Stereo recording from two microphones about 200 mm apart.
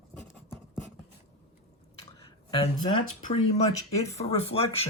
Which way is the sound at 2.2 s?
25° left (ahead or behind).